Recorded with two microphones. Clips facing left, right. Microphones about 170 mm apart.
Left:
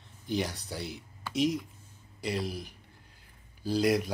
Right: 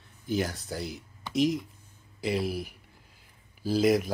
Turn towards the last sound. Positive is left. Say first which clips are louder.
# right 3 dB
turn(degrees=0)  # may be behind; listen again after turning